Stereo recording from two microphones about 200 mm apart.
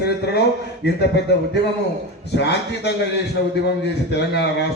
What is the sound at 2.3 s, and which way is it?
Speech, 55° left (ahead or behind).